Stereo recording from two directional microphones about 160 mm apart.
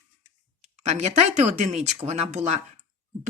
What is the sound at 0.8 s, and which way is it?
Speech, 45° right (ahead or behind).